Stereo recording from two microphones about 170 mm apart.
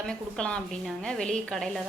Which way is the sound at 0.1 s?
5° left (ahead or behind).